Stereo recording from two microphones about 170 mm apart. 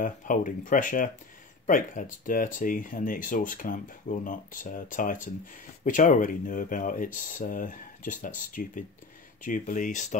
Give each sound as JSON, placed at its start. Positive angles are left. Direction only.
{"t": 0.0, "sound": "speech", "side_deg": 50}